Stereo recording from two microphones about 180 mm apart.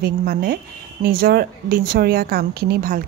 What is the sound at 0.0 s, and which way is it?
A woman's voice, 60° right (ahead or behind).